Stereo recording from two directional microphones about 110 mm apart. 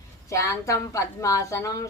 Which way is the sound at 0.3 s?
30° left (ahead or behind).